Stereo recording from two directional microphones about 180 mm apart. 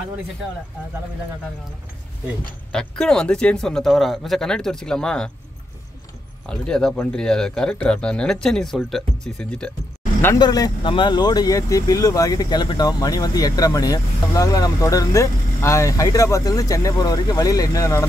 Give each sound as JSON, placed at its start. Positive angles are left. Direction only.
{"t": 2.7, "sound": "speech", "side_deg": 5}
{"t": 6.4, "sound": "speech", "side_deg": 5}
{"t": 10.4, "sound": "speech", "side_deg": 20}